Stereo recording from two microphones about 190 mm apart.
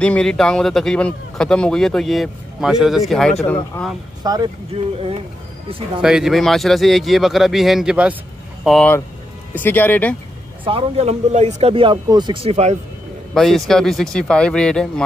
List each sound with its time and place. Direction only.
0.0 s speech: 5° left (ahead or behind)
4.2 s speech: 20° right (ahead or behind)
5.9 s speech: 5° right (ahead or behind)
10.6 s speech: 30° right (ahead or behind)
13.3 s speech: centre (ahead or behind)